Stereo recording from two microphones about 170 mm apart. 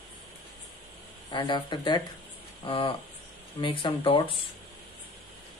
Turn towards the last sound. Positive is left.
turn(degrees=30)  # may be behind; listen again after turning